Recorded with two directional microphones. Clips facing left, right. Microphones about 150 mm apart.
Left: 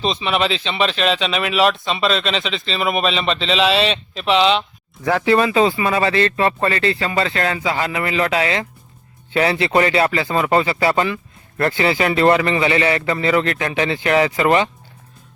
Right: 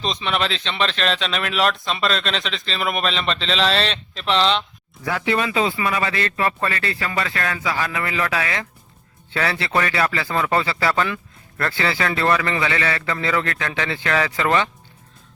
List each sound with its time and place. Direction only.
0.0 s speech: 5° left (ahead or behind)
5.0 s a man's voice: 35° left (ahead or behind); by 14.7 s 20° left (ahead or behind)